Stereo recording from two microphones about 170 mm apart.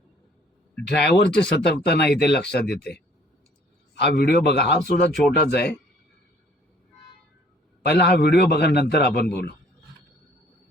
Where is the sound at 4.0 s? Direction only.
70° left (ahead or behind).